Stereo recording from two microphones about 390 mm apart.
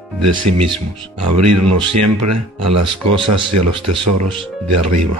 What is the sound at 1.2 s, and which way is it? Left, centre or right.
Speech, right.